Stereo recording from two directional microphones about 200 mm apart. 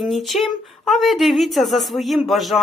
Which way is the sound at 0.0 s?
Centre (ahead or behind).